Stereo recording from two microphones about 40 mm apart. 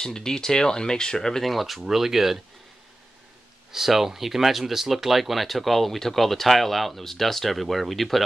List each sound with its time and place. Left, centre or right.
0.0 s speech: centre
1.4 s speech: centre
3.7 s speech: centre